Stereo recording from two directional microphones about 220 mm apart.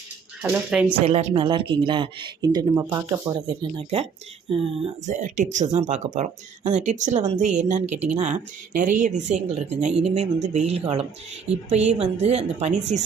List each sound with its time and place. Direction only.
0.4 s speech: 5° right (ahead or behind)
1.0 s speech: 30° right (ahead or behind)
3.6 s speech: 25° right (ahead or behind)